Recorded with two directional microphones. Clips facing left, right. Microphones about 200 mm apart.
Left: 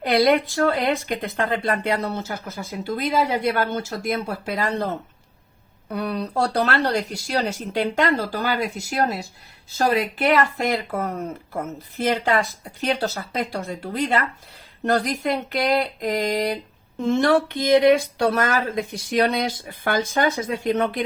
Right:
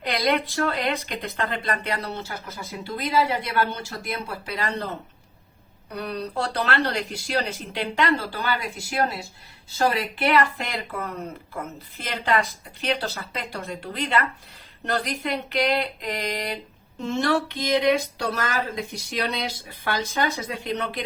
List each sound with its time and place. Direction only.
0.0 s speech: 50° left (ahead or behind)